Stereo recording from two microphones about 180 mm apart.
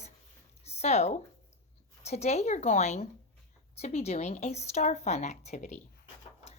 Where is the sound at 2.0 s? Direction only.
40° left (ahead or behind).